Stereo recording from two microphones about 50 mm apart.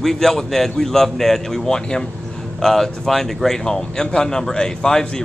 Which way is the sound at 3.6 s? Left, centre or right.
Centre.